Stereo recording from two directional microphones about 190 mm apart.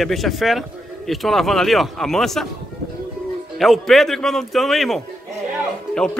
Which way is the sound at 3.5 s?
Centre (ahead or behind).